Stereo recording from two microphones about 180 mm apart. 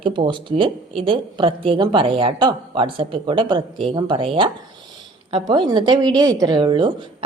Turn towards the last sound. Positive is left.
turn(degrees=-25)  # may be behind; listen again after turning